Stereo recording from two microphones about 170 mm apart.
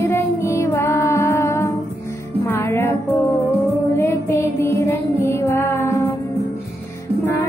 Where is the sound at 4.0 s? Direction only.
15° left (ahead or behind).